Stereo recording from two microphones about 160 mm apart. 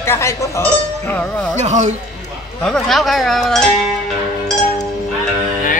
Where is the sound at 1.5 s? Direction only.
45° right (ahead or behind).